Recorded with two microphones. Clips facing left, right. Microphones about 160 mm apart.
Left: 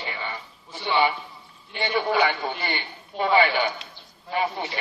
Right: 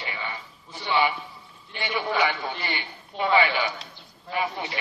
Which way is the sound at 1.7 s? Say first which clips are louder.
Left 4 dB; 35° left (ahead or behind).